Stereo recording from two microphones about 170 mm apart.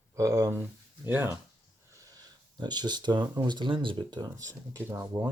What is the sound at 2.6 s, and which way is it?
Speech, 25° right (ahead or behind).